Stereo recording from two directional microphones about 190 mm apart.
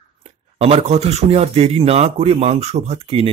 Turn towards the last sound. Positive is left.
turn(degrees=-30)  # may be behind; listen again after turning